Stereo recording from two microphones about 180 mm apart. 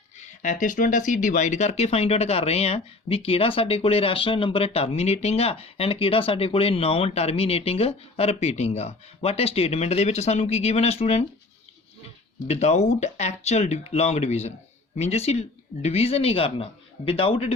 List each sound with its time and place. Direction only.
0.4 s speech: 45° left (ahead or behind)
12.5 s speech: 40° left (ahead or behind)